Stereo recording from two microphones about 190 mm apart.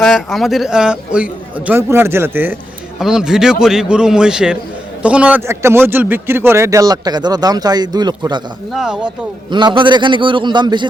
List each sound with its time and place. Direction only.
0.0 s a man's voice: centre (ahead or behind); by 8.4 s 20° right (ahead or behind)
8.7 s a man's voice: 5° right (ahead or behind)
9.5 s a man's voice: 25° right (ahead or behind)